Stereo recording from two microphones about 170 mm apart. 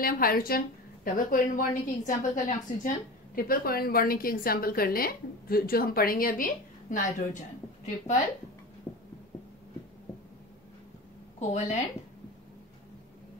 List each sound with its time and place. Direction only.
0.0 s a woman's voice: 60° left (ahead or behind)
11.3 s a woman's voice: 40° left (ahead or behind)